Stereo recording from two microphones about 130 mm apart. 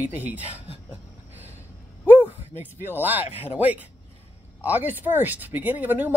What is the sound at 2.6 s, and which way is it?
Speech, 15° right (ahead or behind).